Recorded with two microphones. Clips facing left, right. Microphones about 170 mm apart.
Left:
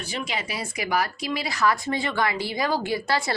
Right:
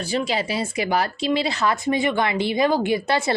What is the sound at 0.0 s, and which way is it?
Speech, 30° right (ahead or behind).